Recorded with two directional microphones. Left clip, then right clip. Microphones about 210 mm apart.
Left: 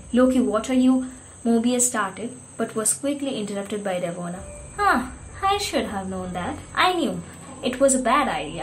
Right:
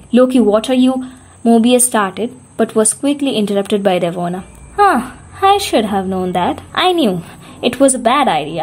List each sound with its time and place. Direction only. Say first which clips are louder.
0.1 s a woman's voice: right 9 dB; 45° right (ahead or behind)